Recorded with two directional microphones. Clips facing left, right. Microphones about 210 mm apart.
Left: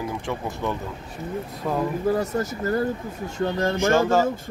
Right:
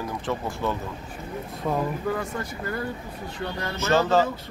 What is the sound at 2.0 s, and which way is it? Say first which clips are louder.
Speech: left 6 dB; 40° left (ahead or behind).